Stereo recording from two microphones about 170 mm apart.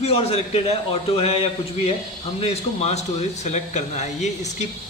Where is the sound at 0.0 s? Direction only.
35° left (ahead or behind).